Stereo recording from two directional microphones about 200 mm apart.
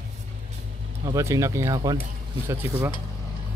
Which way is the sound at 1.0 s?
15° right (ahead or behind).